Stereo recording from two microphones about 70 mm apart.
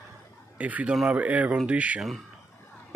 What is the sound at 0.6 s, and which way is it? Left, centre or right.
Speech, right.